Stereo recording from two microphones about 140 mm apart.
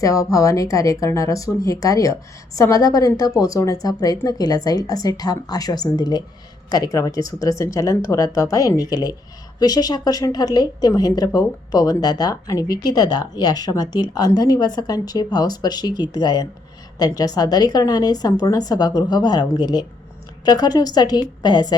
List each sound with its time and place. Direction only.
0.0 s a woman's voice: 25° left (ahead or behind)